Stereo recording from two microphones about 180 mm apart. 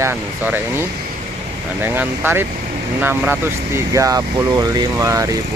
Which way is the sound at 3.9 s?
20° right (ahead or behind).